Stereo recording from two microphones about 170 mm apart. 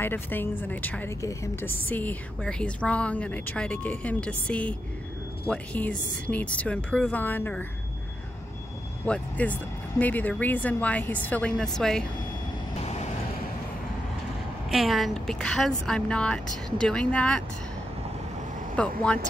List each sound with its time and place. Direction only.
0.0 s a woman's voice: 10° left (ahead or behind)
9.0 s a woman's voice: 10° left (ahead or behind)
12.8 s vehicle: 40° left (ahead or behind)
14.7 s a woman's voice: centre (ahead or behind)
18.8 s a woman's voice: 5° left (ahead or behind)